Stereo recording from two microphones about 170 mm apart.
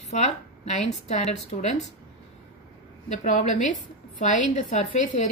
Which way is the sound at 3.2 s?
45° left (ahead or behind).